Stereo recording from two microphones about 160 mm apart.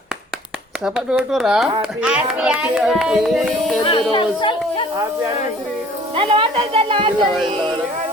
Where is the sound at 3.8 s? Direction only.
30° left (ahead or behind).